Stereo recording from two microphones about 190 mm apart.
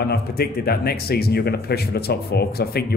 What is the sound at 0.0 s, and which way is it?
Speech, 55° left (ahead or behind).